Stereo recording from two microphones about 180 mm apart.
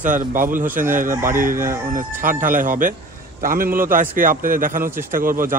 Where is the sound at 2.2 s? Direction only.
50° right (ahead or behind).